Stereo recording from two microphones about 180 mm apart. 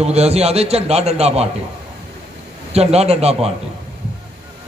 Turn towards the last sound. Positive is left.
turn(degrees=-35)  # may be behind; listen again after turning